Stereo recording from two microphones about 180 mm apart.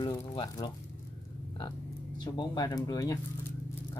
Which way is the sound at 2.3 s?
20° left (ahead or behind).